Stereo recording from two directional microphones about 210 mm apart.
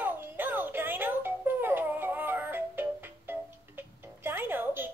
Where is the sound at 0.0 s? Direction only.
10° right (ahead or behind).